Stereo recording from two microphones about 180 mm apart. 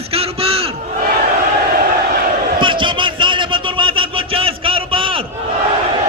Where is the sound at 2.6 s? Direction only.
25° right (ahead or behind).